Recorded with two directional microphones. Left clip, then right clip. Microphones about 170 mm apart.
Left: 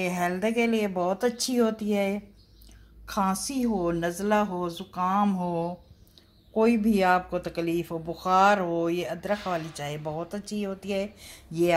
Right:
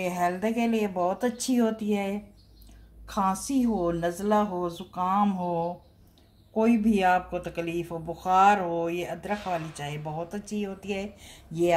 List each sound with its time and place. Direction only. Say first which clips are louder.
0.0 s speech: even; 35° left (ahead or behind)